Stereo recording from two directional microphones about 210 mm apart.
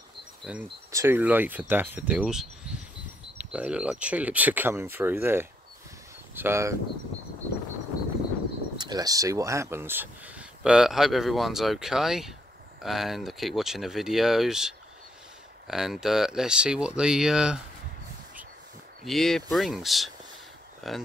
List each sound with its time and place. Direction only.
0.5 s speech: 10° right (ahead or behind)
8.7 s speech: 20° right (ahead or behind); by 17.6 s 5° right (ahead or behind)
19.0 s speech: centre (ahead or behind)